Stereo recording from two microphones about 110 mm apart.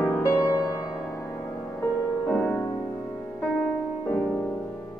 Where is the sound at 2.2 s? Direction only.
15° left (ahead or behind).